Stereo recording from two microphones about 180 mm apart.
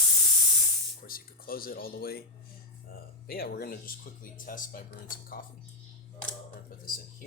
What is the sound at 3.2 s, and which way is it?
Speech, 60° left (ahead or behind).